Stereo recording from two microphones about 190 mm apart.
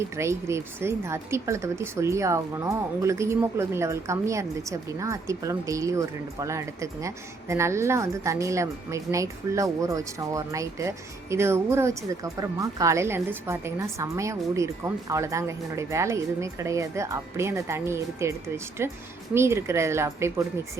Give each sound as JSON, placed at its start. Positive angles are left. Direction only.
{"t": 0.2, "sound": "speech", "side_deg": -15}